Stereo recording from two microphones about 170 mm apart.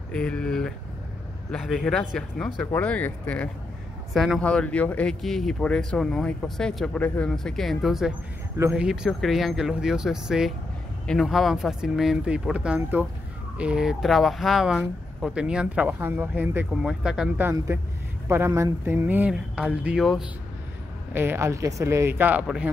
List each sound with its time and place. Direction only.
0.1 s speech: 5° left (ahead or behind)
4.1 s speech: centre (ahead or behind)
17.7 s speech: 15° right (ahead or behind)
21.1 s speech: 15° right (ahead or behind)